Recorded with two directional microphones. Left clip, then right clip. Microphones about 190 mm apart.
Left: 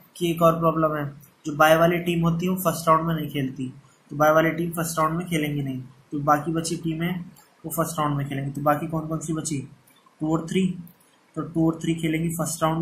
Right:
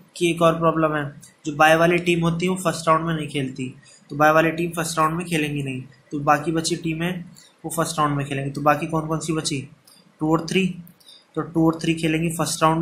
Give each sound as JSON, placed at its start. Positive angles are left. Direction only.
{"t": 0.2, "sound": "speech", "side_deg": -15}